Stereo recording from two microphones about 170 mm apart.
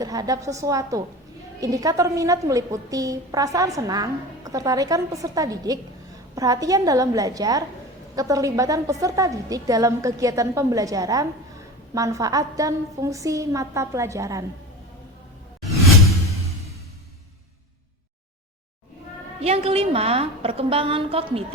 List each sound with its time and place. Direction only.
0.0 s a woman's voice: 20° right (ahead or behind)
19.4 s a woman's voice: 35° right (ahead or behind)